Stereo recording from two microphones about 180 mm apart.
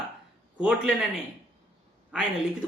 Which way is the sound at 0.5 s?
5° right (ahead or behind).